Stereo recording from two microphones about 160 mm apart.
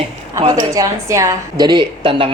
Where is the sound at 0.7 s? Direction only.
20° right (ahead or behind).